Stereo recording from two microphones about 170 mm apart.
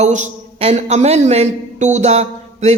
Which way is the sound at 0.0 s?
45° right (ahead or behind).